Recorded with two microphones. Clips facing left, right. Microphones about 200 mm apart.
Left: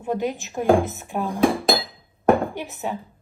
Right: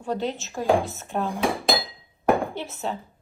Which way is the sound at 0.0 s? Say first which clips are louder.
Left 3 dB; 15° left (ahead or behind).